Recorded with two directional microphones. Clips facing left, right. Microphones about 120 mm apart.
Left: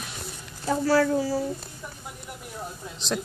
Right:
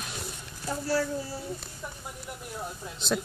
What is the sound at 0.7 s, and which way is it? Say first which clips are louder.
Speech: left 7 dB; 90° left.